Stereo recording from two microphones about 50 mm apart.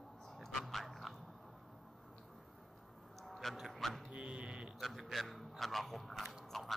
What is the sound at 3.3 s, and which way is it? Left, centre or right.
Speech, centre.